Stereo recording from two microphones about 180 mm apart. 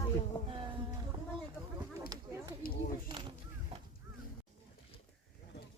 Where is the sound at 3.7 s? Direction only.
30° right (ahead or behind).